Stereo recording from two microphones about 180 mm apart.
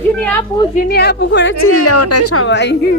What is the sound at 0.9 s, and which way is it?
A woman's voice, 65° left (ahead or behind).